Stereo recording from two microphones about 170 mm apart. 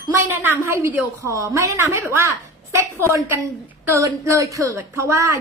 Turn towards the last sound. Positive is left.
turn(degrees=-15)  # may be behind; listen again after turning